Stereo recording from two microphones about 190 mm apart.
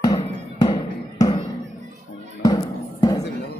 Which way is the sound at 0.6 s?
20° left (ahead or behind).